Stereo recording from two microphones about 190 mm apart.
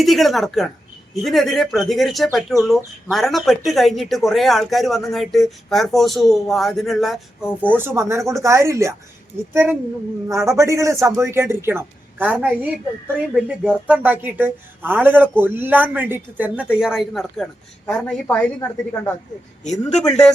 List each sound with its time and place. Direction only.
0.0 s speech: centre (ahead or behind)
7.7 s speech: 10° right (ahead or behind)